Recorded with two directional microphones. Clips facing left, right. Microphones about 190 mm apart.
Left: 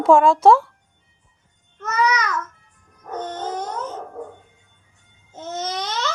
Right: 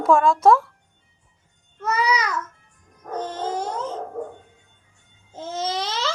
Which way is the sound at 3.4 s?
25° right (ahead or behind).